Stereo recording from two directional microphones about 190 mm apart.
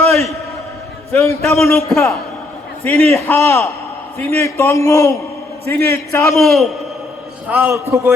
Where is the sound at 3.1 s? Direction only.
15° left (ahead or behind).